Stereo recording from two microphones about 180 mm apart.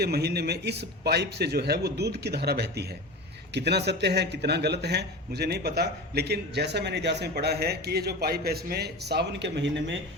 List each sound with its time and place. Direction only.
0.0 s a man's voice: 65° right (ahead or behind); by 10.0 s 85° right